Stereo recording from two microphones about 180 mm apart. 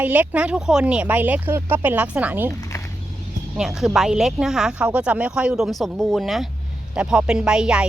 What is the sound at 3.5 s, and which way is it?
Speech, 5° right (ahead or behind).